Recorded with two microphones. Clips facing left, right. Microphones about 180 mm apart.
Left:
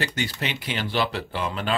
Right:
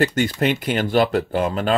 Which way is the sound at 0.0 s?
50° right (ahead or behind).